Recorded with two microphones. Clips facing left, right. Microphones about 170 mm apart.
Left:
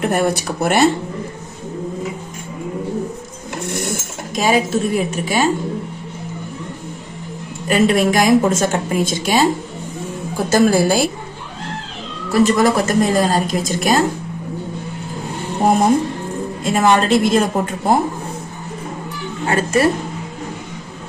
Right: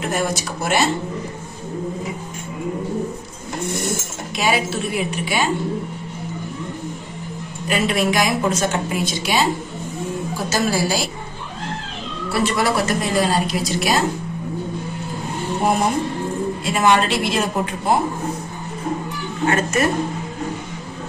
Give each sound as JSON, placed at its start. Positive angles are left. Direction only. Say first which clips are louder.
{"t": 0.0, "sound": "speech", "louder": "left 5 dB", "side_deg": 60}
{"t": 4.4, "sound": "a woman's voice", "louder": "left 5 dB", "side_deg": 40}
{"t": 7.6, "sound": "a woman's voice", "louder": "left 5 dB", "side_deg": 50}
{"t": 10.5, "sound": "a woman's voice", "louder": "left 7 dB", "side_deg": 55}
{"t": 12.3, "sound": "a woman's voice", "louder": "left 6 dB", "side_deg": 45}
{"t": 16.6, "sound": "a woman's voice", "louder": "left 3 dB", "side_deg": 45}
{"t": 19.4, "sound": "a woman's voice", "louder": "left 3 dB", "side_deg": 30}